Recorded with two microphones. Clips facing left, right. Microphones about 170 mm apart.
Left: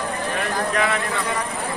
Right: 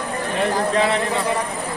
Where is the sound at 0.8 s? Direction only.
25° right (ahead or behind).